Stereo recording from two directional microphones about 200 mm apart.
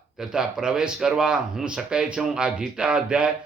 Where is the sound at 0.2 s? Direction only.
5° right (ahead or behind).